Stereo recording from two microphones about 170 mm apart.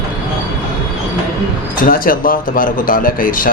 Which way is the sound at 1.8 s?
55° left (ahead or behind).